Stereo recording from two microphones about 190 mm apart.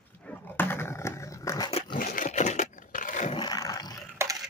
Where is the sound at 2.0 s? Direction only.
45° left (ahead or behind).